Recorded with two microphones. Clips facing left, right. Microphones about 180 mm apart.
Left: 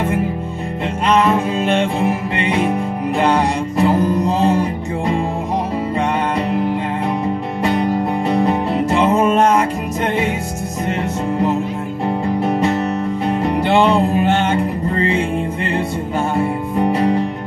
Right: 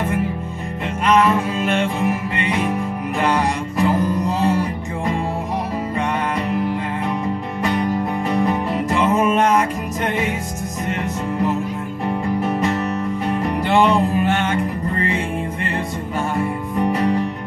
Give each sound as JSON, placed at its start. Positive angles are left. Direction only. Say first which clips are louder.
{"t": 1.0, "sound": "music", "louder": "left 1 dB", "side_deg": 30}
{"t": 7.6, "sound": "music", "louder": "left 3 dB", "side_deg": 30}
{"t": 12.1, "sound": "music", "louder": "left 3 dB", "side_deg": 30}
{"t": 16.3, "sound": "music", "louder": "left 3 dB", "side_deg": 30}